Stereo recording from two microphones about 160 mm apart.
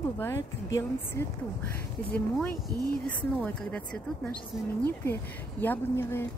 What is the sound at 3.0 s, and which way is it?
Speech, 10° left (ahead or behind).